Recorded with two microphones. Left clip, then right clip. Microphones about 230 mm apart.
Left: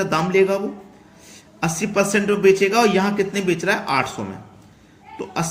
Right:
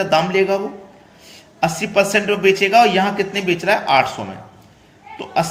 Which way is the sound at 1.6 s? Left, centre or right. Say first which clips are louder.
Right 4 dB; centre.